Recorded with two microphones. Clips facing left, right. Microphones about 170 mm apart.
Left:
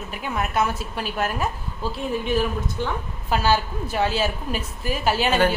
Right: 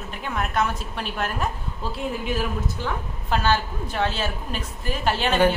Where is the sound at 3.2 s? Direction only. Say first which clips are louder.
Left 1 dB; 5° left (ahead or behind).